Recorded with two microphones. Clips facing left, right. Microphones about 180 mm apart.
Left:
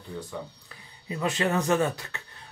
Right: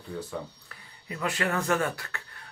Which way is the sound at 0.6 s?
20° left (ahead or behind).